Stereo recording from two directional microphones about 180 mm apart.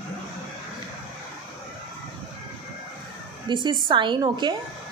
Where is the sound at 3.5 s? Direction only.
25° right (ahead or behind).